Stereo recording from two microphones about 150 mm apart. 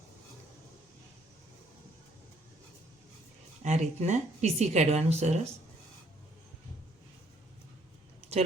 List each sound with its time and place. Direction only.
3.6 s speech: 50° right (ahead or behind)